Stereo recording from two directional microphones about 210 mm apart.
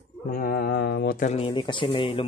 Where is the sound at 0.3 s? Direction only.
45° left (ahead or behind).